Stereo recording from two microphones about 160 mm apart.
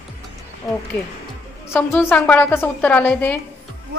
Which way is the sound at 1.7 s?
10° left (ahead or behind).